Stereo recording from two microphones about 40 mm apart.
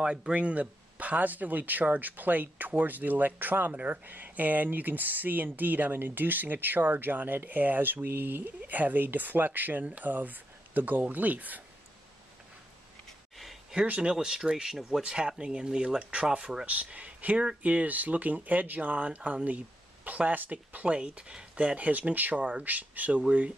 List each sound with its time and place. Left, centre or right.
0.3 s speech: right
13.4 s a sound: centre
14.1 s speech: centre
16.6 s speech: right
21.5 s speech: right
22.4 s speech: right
22.7 s speech: right